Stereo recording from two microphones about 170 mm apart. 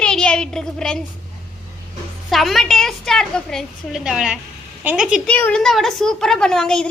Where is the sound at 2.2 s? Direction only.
Centre (ahead or behind).